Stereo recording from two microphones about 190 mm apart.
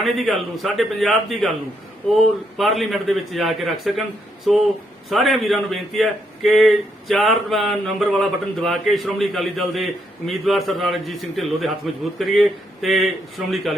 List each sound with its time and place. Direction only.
0.0 s a man's voice: centre (ahead or behind)